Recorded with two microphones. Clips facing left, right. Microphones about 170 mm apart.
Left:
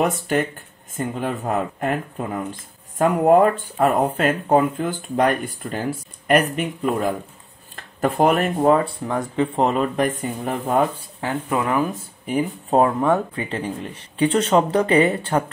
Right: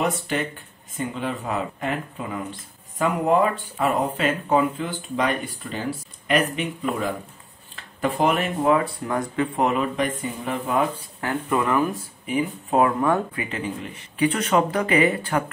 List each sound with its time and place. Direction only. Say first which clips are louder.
0.0 s speech: left 4 dB; 45° left (ahead or behind)
9.0 s speech: left 2 dB; 25° left (ahead or behind); by 10.9 s 40° left (ahead or behind)
11.1 s speech: left 2 dB; 20° left (ahead or behind)
12.3 s speech: left 3 dB; 35° left (ahead or behind)